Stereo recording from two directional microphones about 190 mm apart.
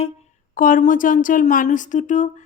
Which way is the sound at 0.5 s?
45° left (ahead or behind).